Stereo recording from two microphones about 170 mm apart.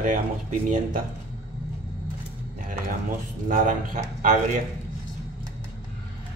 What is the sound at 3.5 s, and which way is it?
Speech, 50° right (ahead or behind).